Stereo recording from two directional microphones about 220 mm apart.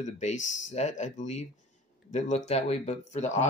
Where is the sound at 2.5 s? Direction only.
30° left (ahead or behind).